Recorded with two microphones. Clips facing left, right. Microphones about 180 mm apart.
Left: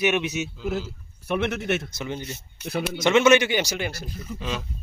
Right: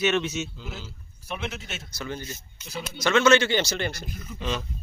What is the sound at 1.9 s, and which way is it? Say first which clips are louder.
Speech: left 2 dB; 20° left (ahead or behind).